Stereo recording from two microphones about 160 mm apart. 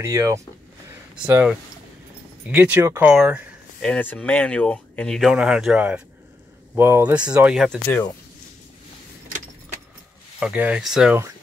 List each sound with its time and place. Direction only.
0.0 s speech: 15° right (ahead or behind)
3.8 s speech: 10° left (ahead or behind)
10.4 s speech: 10° right (ahead or behind)